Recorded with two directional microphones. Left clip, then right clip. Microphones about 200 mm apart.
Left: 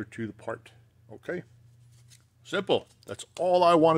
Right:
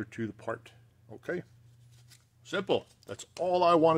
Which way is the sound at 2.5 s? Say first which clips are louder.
Left 3 dB; 20° left (ahead or behind).